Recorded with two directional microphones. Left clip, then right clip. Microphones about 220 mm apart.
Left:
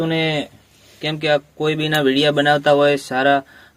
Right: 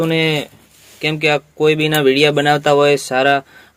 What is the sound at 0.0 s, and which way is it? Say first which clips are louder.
Speech: right 3 dB; 10° left (ahead or behind).